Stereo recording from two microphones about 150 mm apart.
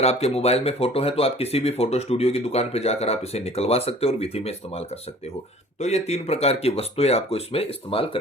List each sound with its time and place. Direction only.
0.0 s speech: 45° left (ahead or behind)